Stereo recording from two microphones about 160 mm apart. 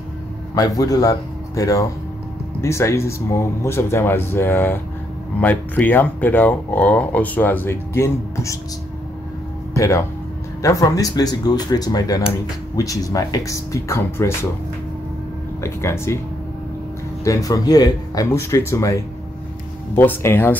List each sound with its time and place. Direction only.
0.6 s speech: 20° left (ahead or behind)
9.8 s speech: 20° left (ahead or behind)
15.6 s speech: 15° left (ahead or behind)
17.2 s speech: 20° left (ahead or behind)